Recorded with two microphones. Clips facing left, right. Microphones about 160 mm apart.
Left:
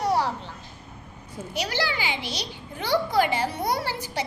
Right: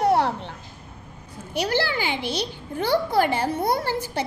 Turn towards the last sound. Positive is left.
turn(degrees=-50)  # may be behind; listen again after turning